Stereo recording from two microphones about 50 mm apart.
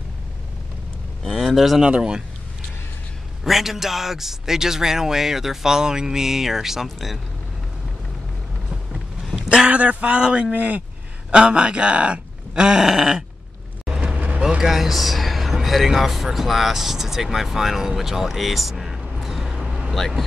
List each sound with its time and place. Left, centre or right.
1.2 s speech: centre
1.8 s a man's voice: centre
3.4 s a man's voice: centre
9.3 s a sound: centre
9.7 s speech: right
10.5 s speech: right
11.2 s speech: centre
13.8 s vehicle: right
14.6 s a man's voice: centre